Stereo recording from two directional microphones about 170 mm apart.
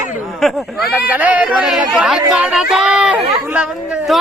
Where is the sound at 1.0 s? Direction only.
10° right (ahead or behind).